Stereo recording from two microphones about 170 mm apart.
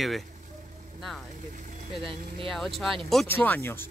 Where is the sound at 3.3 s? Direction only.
10° left (ahead or behind).